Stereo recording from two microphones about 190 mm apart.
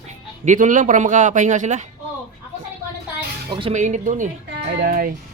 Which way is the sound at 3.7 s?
40° right (ahead or behind).